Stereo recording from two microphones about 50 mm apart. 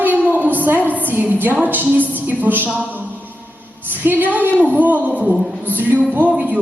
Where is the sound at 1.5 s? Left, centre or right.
Right.